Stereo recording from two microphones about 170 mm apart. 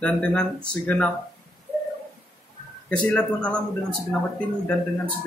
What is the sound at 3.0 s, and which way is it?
Speech, 5° left (ahead or behind).